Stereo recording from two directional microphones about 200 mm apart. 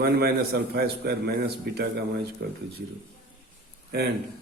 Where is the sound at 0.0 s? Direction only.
50° right (ahead or behind).